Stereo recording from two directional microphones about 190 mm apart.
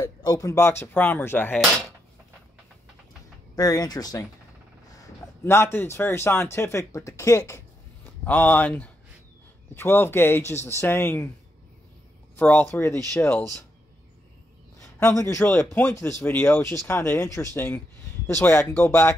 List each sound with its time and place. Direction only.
0.0 s a man's voice: 20° left (ahead or behind)
3.5 s a man's voice: 20° left (ahead or behind)
12.4 s a man's voice: 10° left (ahead or behind)
14.8 s a man's voice: 15° left (ahead or behind)